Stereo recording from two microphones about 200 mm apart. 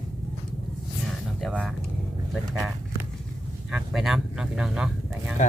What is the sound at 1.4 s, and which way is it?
Speech, centre (ahead or behind).